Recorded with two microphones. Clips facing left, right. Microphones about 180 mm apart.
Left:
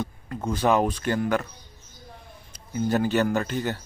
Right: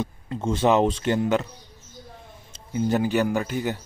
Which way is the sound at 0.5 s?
25° right (ahead or behind).